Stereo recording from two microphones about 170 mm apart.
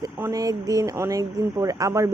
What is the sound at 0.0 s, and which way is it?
A woman's voice, 20° right (ahead or behind).